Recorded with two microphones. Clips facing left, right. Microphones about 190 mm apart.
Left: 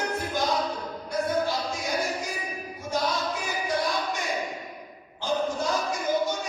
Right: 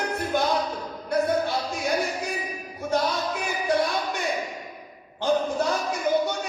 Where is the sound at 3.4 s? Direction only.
60° right (ahead or behind).